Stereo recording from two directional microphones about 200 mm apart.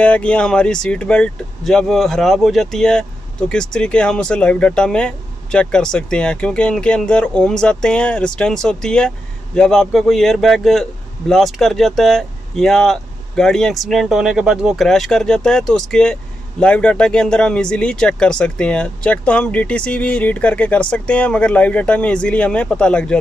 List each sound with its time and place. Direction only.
0.0 s a man's voice: 5° left (ahead or behind)